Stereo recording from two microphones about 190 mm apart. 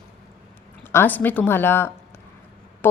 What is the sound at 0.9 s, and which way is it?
A woman's voice, 10° left (ahead or behind).